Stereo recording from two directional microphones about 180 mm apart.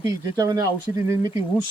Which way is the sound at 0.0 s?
20° right (ahead or behind).